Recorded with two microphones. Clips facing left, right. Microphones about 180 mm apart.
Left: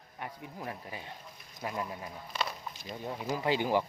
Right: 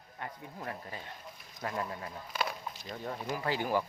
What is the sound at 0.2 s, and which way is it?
Speech, 15° left (ahead or behind).